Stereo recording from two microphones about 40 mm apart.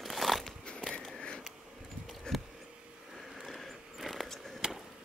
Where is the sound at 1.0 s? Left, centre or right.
Centre.